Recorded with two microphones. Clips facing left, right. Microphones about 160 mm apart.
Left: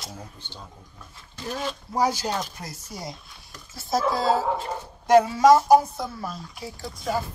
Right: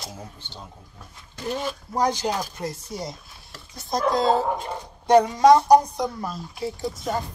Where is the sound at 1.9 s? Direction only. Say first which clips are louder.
Right 1 dB; 10° left (ahead or behind).